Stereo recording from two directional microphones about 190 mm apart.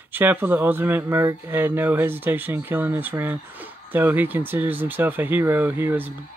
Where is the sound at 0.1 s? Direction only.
10° right (ahead or behind).